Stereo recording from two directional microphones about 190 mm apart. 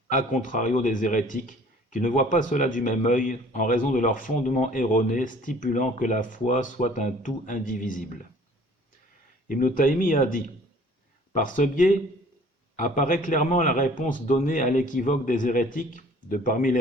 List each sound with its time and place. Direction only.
0.1 s a man's voice: 45° left (ahead or behind)
9.5 s a man's voice: 45° left (ahead or behind)